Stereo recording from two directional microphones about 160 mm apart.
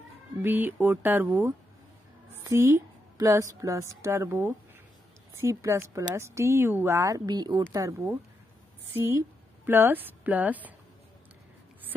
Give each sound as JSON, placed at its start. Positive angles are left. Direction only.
{"t": 0.4, "sound": "a woman's voice", "side_deg": -10}
{"t": 9.7, "sound": "speech", "side_deg": -15}